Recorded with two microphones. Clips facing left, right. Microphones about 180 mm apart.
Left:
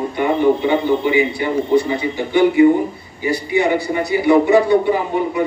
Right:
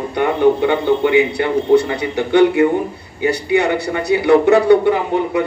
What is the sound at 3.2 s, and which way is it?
A man's voice, 70° right (ahead or behind).